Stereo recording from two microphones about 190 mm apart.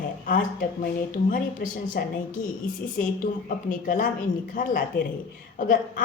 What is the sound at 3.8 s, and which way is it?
A woman's voice, 45° left (ahead or behind).